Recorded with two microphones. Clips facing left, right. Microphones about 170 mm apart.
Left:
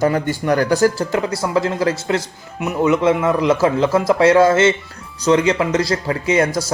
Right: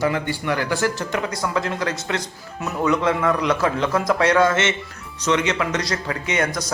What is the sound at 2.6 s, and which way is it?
Speech, 20° left (ahead or behind).